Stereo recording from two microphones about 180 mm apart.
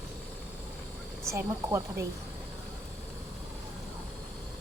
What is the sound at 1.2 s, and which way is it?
Speech, 15° right (ahead or behind).